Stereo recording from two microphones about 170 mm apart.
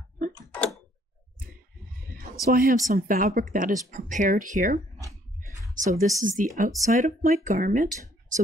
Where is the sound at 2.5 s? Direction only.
60° right (ahead or behind).